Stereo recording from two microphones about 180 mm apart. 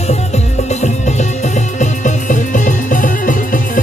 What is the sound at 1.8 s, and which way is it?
Music, 45° left (ahead or behind).